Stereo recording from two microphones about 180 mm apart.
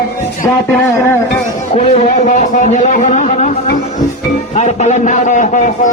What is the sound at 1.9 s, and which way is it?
A man's voice, 40° left (ahead or behind).